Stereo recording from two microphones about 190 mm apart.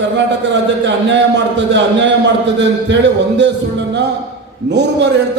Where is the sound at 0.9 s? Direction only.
70° right (ahead or behind).